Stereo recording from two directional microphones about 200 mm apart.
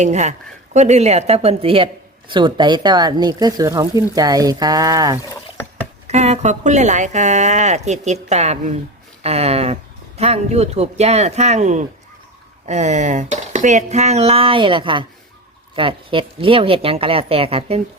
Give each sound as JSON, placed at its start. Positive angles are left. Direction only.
{"t": 0.0, "sound": "a woman's voice", "side_deg": -35}
{"t": 6.1, "sound": "a woman's voice", "side_deg": -35}